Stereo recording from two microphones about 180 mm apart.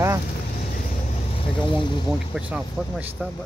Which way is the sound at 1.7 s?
25° left (ahead or behind).